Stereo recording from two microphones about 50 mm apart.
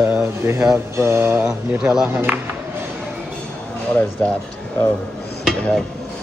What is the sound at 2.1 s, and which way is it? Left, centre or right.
Speech, right.